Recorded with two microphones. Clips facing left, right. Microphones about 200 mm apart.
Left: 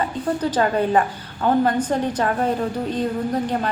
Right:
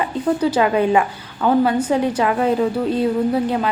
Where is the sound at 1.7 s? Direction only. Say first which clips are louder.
Right 3 dB; 10° right (ahead or behind).